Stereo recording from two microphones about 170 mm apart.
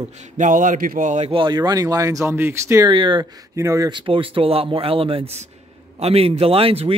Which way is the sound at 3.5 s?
20° right (ahead or behind).